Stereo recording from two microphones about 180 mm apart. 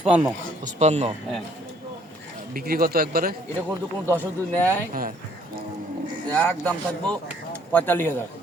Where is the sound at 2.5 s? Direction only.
55° right (ahead or behind).